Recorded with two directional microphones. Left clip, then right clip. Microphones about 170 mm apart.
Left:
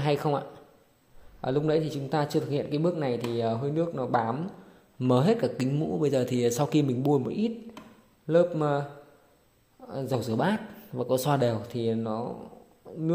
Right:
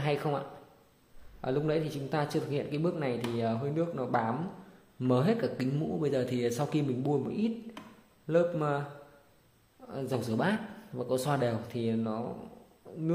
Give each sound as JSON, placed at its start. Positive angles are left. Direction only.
{"t": 0.0, "sound": "speech", "side_deg": 30}
{"t": 1.4, "sound": "a man's voice", "side_deg": 30}
{"t": 9.8, "sound": "speech", "side_deg": 30}